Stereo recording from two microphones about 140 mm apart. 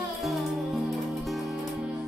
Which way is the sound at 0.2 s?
Centre (ahead or behind).